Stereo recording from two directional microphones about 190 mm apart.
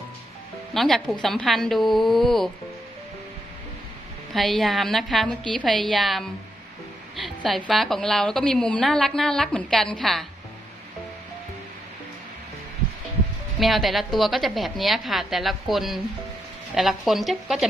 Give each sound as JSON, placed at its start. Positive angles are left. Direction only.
{"t": 0.7, "sound": "a woman's voice", "side_deg": 0}
{"t": 4.3, "sound": "a woman's voice", "side_deg": 0}
{"t": 13.6, "sound": "a woman's voice", "side_deg": 0}